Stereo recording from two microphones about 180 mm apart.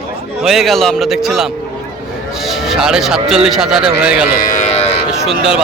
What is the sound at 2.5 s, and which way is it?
Speech, centre (ahead or behind).